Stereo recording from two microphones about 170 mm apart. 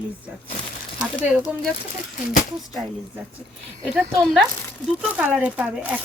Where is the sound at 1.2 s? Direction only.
5° right (ahead or behind).